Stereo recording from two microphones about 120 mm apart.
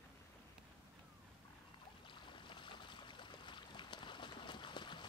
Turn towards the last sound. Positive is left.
turn(degrees=40)  # may be behind; listen again after turning